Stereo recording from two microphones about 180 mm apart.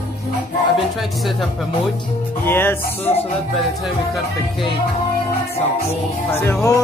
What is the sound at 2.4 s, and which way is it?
Music, 10° left (ahead or behind).